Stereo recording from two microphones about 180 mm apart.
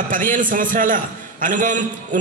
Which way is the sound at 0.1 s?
45° right (ahead or behind).